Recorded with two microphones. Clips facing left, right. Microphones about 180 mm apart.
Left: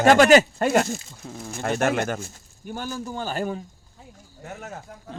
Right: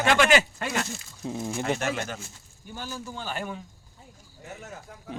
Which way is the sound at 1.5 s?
55° left (ahead or behind).